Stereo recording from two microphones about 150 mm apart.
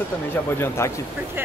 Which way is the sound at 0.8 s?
20° left (ahead or behind).